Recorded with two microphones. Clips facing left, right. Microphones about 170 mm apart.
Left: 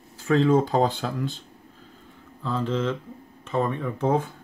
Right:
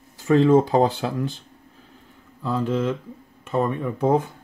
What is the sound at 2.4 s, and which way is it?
Speech, 10° right (ahead or behind).